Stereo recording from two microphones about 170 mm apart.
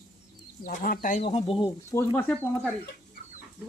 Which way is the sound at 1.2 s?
35° left (ahead or behind).